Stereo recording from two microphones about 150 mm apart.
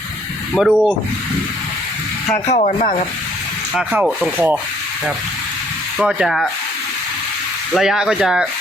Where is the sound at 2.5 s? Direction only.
50° left (ahead or behind).